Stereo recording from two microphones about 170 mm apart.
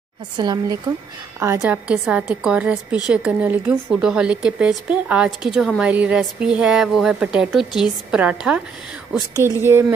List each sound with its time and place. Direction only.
0.4 s a woman's voice: 25° right (ahead or behind)